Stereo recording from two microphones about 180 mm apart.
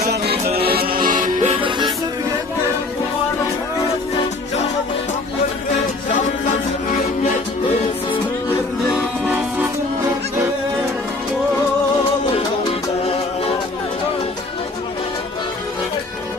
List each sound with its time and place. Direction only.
0.7 s music: 55° right (ahead or behind); by 1.7 s 40° right (ahead or behind)
8.9 s music: 5° right (ahead or behind)